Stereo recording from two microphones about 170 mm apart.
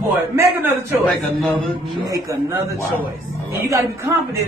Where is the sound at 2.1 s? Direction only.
15° right (ahead or behind).